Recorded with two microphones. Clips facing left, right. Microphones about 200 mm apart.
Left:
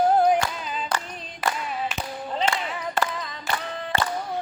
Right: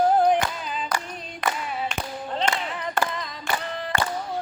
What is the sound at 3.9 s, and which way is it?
Music, 30° left (ahead or behind).